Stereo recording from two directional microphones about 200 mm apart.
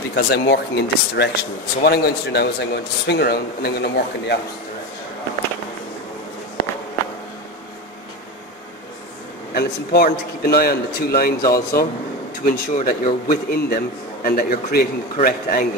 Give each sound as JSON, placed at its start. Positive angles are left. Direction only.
{"t": 0.1, "sound": "a man's voice", "side_deg": 50}
{"t": 9.5, "sound": "a man's voice", "side_deg": 50}